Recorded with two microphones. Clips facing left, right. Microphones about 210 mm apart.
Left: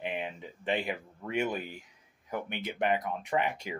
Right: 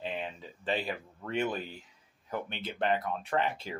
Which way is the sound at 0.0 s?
15° left (ahead or behind).